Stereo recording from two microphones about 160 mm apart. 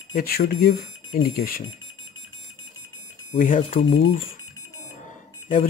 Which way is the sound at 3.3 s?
55° left (ahead or behind).